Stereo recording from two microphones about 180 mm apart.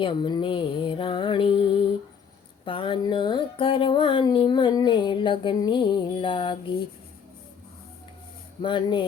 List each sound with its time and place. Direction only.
0.0 s music: 25° left (ahead or behind)
8.6 s music: 25° left (ahead or behind)